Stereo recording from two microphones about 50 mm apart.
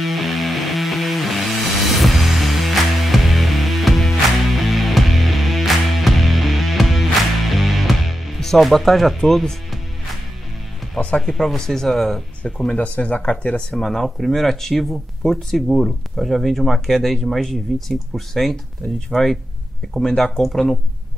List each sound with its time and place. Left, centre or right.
0.0 s music: centre
11.1 s speech: centre
12.4 s speech: centre
12.7 s speech: left
13.8 s speech: centre